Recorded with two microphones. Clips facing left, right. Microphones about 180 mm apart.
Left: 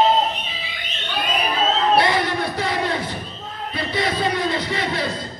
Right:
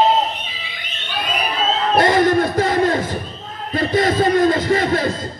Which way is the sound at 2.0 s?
45° right (ahead or behind).